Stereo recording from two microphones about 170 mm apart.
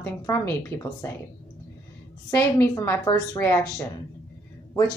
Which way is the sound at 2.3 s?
15° left (ahead or behind).